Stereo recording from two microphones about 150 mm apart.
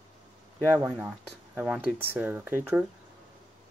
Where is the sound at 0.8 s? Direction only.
20° right (ahead or behind).